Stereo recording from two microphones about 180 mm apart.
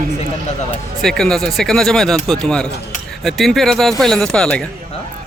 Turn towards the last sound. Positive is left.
turn(degrees=5)  # may be behind; listen again after turning